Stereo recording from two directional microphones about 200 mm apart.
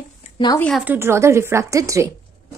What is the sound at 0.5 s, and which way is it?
Speech, 5° left (ahead or behind).